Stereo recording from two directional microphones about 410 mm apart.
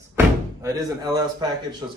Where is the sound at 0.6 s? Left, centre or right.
Centre.